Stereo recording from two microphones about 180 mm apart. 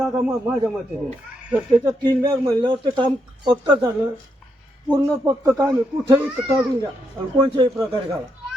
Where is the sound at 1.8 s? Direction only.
20° right (ahead or behind).